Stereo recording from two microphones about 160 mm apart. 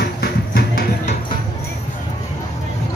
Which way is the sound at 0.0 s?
70° left (ahead or behind).